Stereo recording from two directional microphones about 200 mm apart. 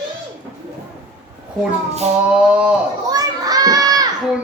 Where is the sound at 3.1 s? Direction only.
20° right (ahead or behind).